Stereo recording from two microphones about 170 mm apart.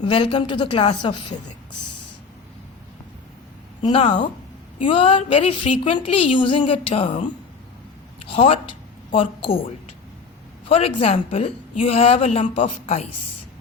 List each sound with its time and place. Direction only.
0.0 s a woman's voice: 30° left (ahead or behind)
3.8 s a woman's voice: 30° left (ahead or behind)
8.3 s a woman's voice: 35° left (ahead or behind)